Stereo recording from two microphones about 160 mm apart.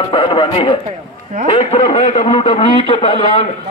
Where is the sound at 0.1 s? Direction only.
30° left (ahead or behind).